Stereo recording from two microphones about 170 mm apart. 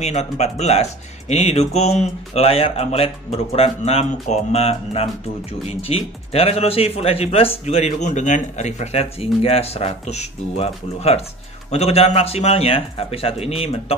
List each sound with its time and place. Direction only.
0.0 s speech: 40° left (ahead or behind)